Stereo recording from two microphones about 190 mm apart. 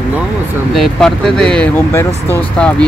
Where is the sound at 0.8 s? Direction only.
Centre (ahead or behind).